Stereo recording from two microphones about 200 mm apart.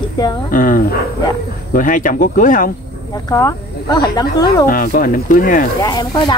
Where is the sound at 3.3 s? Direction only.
20° left (ahead or behind).